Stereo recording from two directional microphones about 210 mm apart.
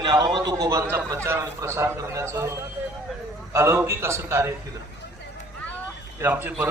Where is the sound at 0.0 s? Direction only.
20° right (ahead or behind).